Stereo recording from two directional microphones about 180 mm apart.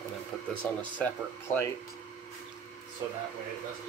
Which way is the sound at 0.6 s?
10° left (ahead or behind).